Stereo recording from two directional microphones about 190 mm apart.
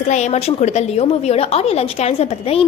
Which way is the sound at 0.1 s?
40° left (ahead or behind).